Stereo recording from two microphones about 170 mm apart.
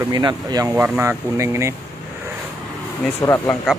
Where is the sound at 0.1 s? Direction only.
25° right (ahead or behind).